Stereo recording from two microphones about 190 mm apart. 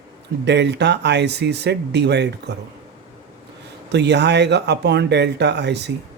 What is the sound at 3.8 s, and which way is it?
Speech, 60° right (ahead or behind).